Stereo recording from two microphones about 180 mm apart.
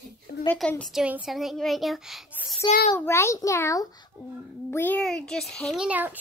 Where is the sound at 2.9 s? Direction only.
15° left (ahead or behind).